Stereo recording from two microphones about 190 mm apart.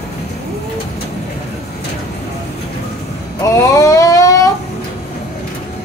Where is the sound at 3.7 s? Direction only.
15° left (ahead or behind).